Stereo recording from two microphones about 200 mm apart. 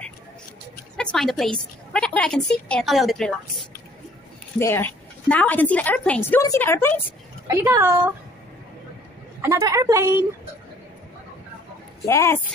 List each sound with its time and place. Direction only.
0.9 s a woman's voice: centre (ahead or behind)
4.6 s a woman's voice: 10° left (ahead or behind)
7.4 s a woman's voice: 15° right (ahead or behind)
9.4 s a woman's voice: 15° right (ahead or behind)
12.1 s a woman's voice: 15° left (ahead or behind)